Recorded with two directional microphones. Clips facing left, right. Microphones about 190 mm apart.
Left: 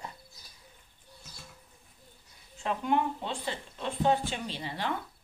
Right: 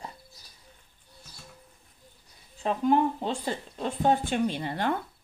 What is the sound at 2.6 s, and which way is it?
Speech, 35° right (ahead or behind).